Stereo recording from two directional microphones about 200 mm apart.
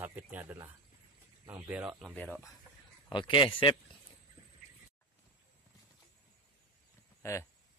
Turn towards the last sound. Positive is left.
turn(degrees=15)  # may be behind; listen again after turning